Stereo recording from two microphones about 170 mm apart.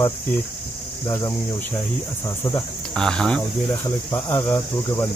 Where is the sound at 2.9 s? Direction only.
5° left (ahead or behind).